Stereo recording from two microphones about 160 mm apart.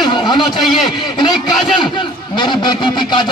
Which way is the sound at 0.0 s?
30° left (ahead or behind).